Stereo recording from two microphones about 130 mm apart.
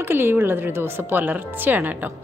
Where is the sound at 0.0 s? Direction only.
15° right (ahead or behind).